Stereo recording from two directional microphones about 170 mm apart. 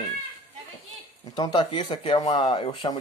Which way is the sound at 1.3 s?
25° left (ahead or behind).